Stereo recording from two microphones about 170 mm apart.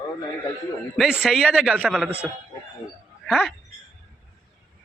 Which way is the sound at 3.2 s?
Centre (ahead or behind).